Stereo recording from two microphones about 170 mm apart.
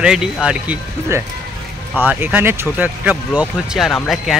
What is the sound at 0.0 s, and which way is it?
Speech, 5° right (ahead or behind).